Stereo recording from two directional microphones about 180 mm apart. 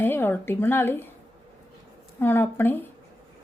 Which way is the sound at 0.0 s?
10° left (ahead or behind).